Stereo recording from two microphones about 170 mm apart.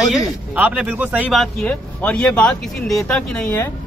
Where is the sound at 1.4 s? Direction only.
5° left (ahead or behind).